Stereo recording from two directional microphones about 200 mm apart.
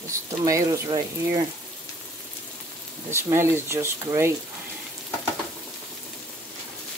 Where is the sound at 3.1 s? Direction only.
10° right (ahead or behind).